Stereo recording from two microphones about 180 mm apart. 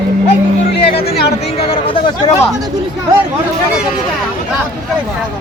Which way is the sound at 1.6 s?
30° left (ahead or behind).